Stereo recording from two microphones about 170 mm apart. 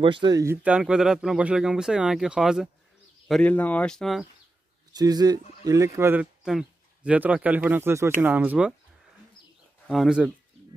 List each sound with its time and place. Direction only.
0.0 s speech: 30° right (ahead or behind)
0.7 s speech: 5° right (ahead or behind)
4.9 s speech: 25° right (ahead or behind)
6.4 s speech: 5° right (ahead or behind)
9.8 s speech: 5° right (ahead or behind)